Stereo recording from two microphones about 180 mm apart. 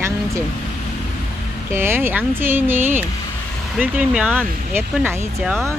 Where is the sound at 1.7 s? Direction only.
15° right (ahead or behind).